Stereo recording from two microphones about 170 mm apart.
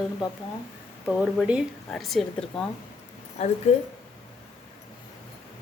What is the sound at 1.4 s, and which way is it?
Speech, 5° right (ahead or behind).